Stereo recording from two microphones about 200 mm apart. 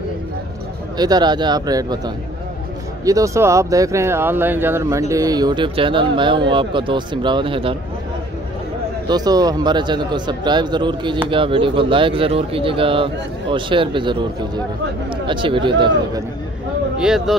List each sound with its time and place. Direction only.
0.9 s speech: 20° right (ahead or behind)
9.0 s speech: 20° right (ahead or behind)
17.0 s speech: centre (ahead or behind)